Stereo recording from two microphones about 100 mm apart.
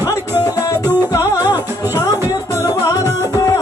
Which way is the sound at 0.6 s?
35° left (ahead or behind).